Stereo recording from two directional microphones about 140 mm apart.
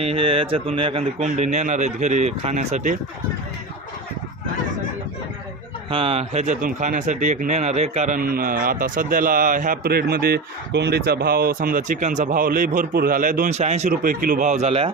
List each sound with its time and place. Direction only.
0.0 s speech: 40° right (ahead or behind)
1.2 s speech: 55° right (ahead or behind)
5.9 s speech: 40° right (ahead or behind); by 13.6 s 70° right (ahead or behind)
13.6 s speech: 55° right (ahead or behind)